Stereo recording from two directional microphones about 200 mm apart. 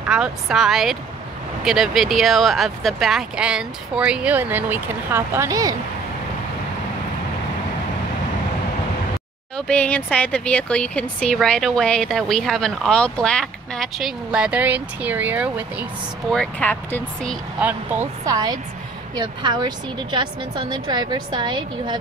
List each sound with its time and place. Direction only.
0.1 s speech: 5° right (ahead or behind)
9.6 s speech: 5° left (ahead or behind)
16.3 s speech: 5° left (ahead or behind)
17.6 s speech: 5° right (ahead or behind)
18.2 s a woman's voice: 20° right (ahead or behind)